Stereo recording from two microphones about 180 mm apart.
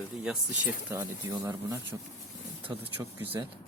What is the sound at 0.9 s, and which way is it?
Speech, 15° right (ahead or behind).